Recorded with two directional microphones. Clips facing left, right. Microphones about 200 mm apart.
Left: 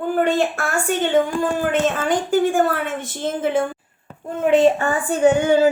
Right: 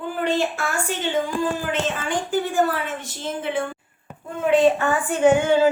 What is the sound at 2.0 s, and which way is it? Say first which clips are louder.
A woman's voice: left 6 dB; 40° left (ahead or behind).